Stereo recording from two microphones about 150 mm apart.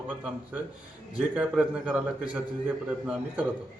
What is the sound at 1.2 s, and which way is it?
A man's voice, 5° right (ahead or behind).